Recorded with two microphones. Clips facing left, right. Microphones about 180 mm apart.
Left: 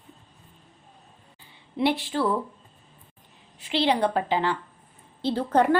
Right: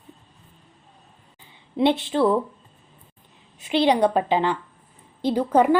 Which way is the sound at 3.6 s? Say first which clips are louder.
Right 4 dB; 20° right (ahead or behind).